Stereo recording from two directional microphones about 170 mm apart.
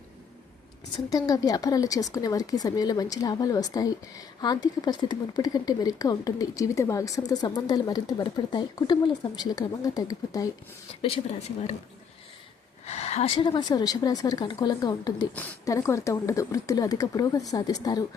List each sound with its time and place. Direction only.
1.1 s speech: 20° left (ahead or behind)
12.8 s speech: 40° left (ahead or behind); by 18.0 s 25° left (ahead or behind)